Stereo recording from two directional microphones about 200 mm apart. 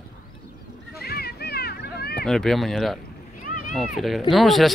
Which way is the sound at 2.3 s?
Centre (ahead or behind).